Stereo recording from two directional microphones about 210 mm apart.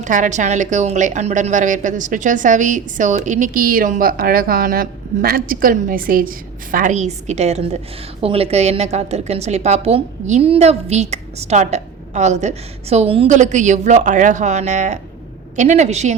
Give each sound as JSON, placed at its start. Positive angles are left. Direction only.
{"t": 0.0, "sound": "a woman's voice", "side_deg": -35}